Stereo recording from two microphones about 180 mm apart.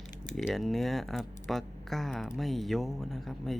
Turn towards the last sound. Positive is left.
turn(degrees=0)  # may be behind; listen again after turning